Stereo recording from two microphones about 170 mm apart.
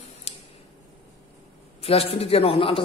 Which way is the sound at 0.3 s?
35° left (ahead or behind).